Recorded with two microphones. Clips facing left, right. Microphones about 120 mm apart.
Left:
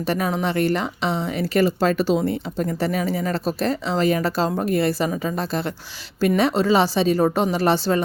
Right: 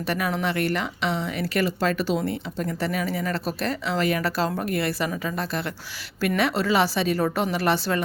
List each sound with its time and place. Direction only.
0.0 s a woman's voice: 30° left (ahead or behind)